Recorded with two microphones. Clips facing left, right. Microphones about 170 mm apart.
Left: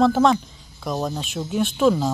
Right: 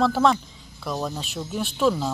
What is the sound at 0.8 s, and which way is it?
Speech, 15° left (ahead or behind).